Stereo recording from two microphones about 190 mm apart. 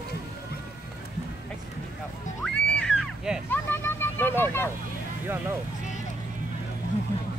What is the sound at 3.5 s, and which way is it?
Vehicle, 10° left (ahead or behind).